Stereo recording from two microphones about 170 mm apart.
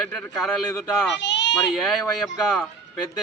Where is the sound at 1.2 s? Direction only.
90° left.